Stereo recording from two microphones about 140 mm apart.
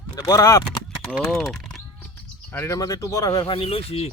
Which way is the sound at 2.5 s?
20° left (ahead or behind).